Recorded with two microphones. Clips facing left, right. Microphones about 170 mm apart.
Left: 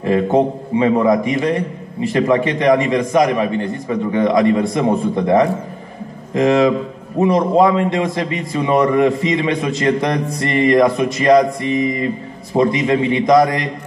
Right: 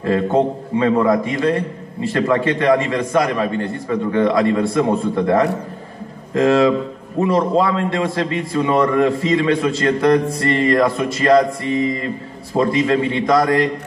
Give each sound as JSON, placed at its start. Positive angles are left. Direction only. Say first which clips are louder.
{"t": 0.0, "sound": "a man's voice", "louder": "left 2 dB", "side_deg": 15}